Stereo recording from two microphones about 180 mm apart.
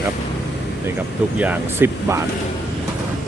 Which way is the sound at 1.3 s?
10° right (ahead or behind).